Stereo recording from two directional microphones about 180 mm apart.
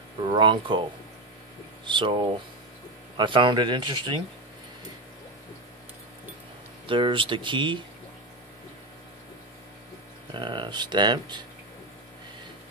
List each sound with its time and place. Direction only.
0.3 s speech: 25° right (ahead or behind)
1.9 s speech: 25° right (ahead or behind)
6.9 s speech: 30° right (ahead or behind)
10.3 s speech: 25° right (ahead or behind)